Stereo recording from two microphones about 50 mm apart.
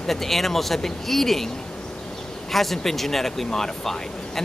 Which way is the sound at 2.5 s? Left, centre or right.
Centre.